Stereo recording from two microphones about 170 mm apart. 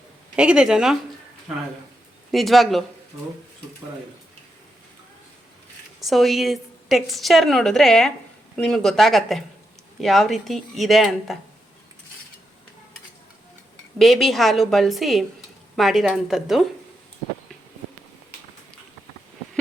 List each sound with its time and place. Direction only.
0.3 s a woman's voice: 5° right (ahead or behind)
2.3 s a woman's voice: centre (ahead or behind)
6.0 s a woman's voice: centre (ahead or behind)
14.0 s a woman's voice: centre (ahead or behind)